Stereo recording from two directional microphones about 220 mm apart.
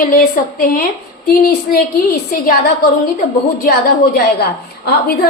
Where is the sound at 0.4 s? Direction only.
40° left (ahead or behind).